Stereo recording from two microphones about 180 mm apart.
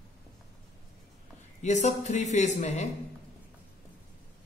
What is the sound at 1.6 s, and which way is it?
Speech, 40° left (ahead or behind).